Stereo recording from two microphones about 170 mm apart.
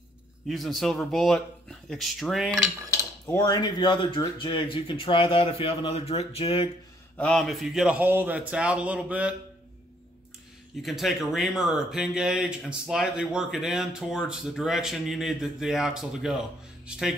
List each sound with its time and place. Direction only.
0.5 s speech: centre (ahead or behind)
3.3 s speech: 20° left (ahead or behind)
7.2 s a man's voice: 5° left (ahead or behind)
10.8 s speech: centre (ahead or behind)